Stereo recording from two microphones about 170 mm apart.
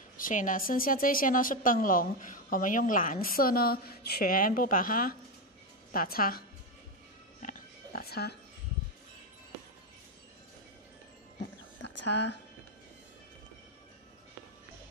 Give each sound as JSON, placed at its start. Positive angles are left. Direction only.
{"t": 0.2, "sound": "a woman's voice", "side_deg": 50}
{"t": 7.3, "sound": "music", "side_deg": 50}
{"t": 11.8, "sound": "a sound", "side_deg": 90}